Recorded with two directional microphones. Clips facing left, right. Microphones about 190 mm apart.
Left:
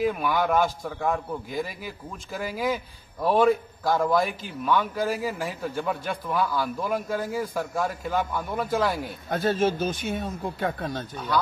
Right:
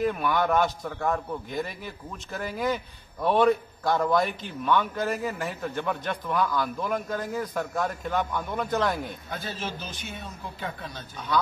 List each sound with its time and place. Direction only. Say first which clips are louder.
0.0 s a man's voice: left 1 dB; 5° left (ahead or behind)
9.3 s speech: left 15 dB; 50° left (ahead or behind)